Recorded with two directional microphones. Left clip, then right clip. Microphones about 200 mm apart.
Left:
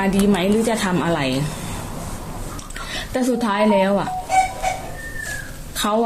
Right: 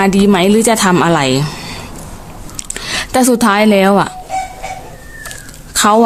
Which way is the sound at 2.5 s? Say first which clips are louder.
Right 11 dB; 40° right (ahead or behind).